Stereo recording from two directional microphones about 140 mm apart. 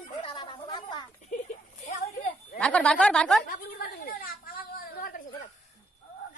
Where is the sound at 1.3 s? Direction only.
60° left (ahead or behind).